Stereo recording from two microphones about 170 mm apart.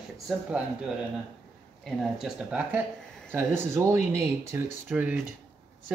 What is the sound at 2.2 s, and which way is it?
Speech, 10° right (ahead or behind).